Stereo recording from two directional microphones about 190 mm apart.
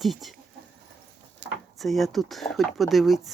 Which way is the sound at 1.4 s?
70° right (ahead or behind).